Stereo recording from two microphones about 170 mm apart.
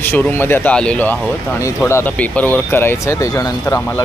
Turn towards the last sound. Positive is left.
turn(degrees=20)  # may be behind; listen again after turning